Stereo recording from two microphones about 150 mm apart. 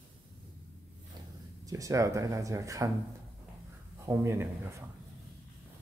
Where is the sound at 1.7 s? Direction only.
20° right (ahead or behind).